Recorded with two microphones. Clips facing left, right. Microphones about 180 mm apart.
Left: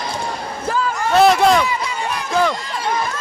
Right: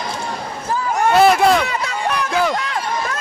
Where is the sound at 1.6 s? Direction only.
70° right (ahead or behind).